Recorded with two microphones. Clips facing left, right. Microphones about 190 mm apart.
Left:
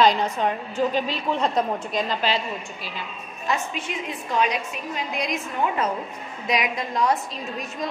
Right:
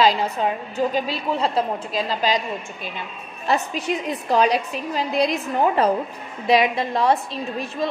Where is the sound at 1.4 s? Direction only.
30° right (ahead or behind).